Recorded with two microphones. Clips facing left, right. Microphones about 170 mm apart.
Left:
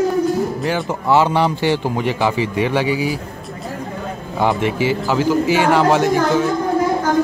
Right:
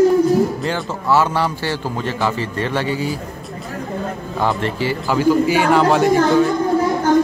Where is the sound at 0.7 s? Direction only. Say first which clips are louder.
Left 2 dB; 20° left (ahead or behind).